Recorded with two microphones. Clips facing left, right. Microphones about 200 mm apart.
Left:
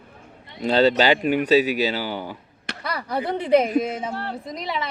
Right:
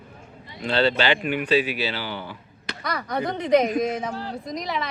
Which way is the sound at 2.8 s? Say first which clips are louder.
Even; 30° left (ahead or behind).